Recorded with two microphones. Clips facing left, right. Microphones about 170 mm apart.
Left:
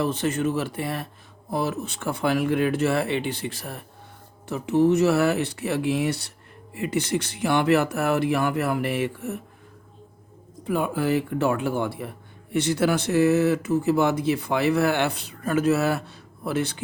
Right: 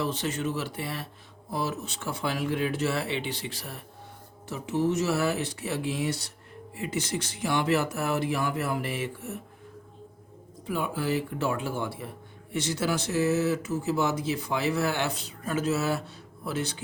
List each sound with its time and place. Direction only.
0.0 s speech: 50° left (ahead or behind)
4.4 s speech: 60° left (ahead or behind)
10.7 s speech: 55° left (ahead or behind)